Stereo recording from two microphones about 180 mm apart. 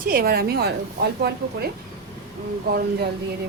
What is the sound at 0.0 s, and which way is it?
A woman's voice, 55° right (ahead or behind).